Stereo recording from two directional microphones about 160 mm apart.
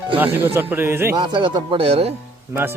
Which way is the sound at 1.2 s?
30° right (ahead or behind).